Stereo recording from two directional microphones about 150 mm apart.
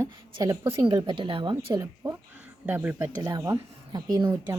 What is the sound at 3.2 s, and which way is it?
Speech, 25° right (ahead or behind).